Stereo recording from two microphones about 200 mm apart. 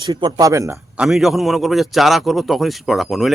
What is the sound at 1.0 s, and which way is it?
A man's voice, centre (ahead or behind).